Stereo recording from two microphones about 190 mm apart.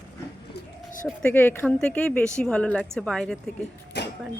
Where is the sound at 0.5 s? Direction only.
45° left (ahead or behind).